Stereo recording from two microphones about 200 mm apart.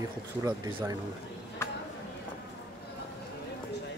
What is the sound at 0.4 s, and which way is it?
Speech, 15° right (ahead or behind).